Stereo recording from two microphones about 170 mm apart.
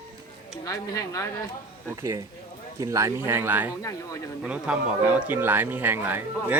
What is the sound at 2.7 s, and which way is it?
Speech, 20° right (ahead or behind).